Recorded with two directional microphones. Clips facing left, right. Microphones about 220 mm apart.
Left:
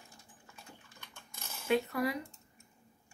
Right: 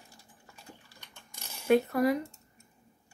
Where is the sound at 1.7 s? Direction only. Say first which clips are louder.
Right 7 dB; 45° right (ahead or behind).